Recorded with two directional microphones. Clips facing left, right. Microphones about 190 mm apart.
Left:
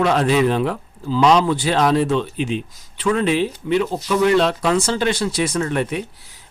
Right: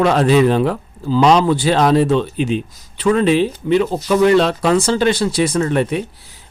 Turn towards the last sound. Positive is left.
turn(degrees=-30)  # may be behind; listen again after turning